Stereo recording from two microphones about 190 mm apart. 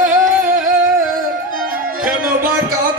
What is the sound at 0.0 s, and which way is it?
Music, 45° right (ahead or behind).